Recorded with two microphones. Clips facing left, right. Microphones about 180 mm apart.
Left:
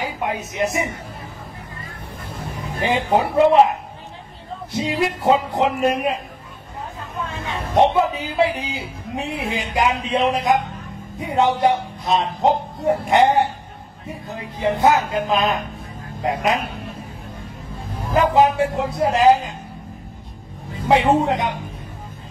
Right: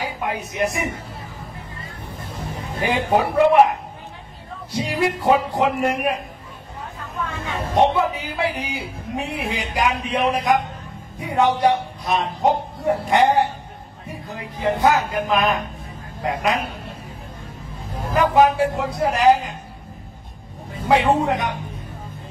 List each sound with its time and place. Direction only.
0.0 s a woman's voice: 20° left (ahead or behind)
2.8 s speech: 20° left (ahead or behind)
4.7 s speech: 25° left (ahead or behind)
7.2 s speech: 20° left (ahead or behind)
18.1 s speech: 25° left (ahead or behind)
20.9 s speech: 20° left (ahead or behind)